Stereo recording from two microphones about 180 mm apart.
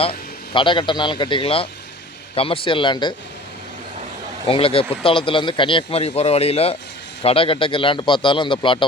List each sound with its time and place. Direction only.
0.0 s a man's voice: 30° left (ahead or behind)
4.4 s a man's voice: 30° left (ahead or behind)